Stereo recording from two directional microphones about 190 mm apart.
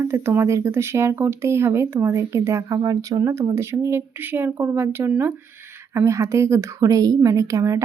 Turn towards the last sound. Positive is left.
turn(degrees=-15)  # may be behind; listen again after turning